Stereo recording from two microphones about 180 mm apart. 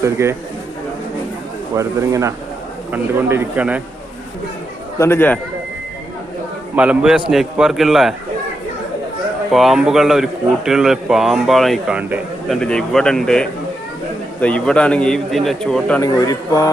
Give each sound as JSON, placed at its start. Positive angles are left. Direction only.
{"t": 0.0, "sound": "a man's voice", "side_deg": -15}
{"t": 1.7, "sound": "a man's voice", "side_deg": -15}
{"t": 4.9, "sound": "a man's voice", "side_deg": 15}
{"t": 6.7, "sound": "a man's voice", "side_deg": -5}
{"t": 9.5, "sound": "a man's voice", "side_deg": 0}
{"t": 12.5, "sound": "a man's voice", "side_deg": 5}
{"t": 16.0, "sound": "speech", "side_deg": 20}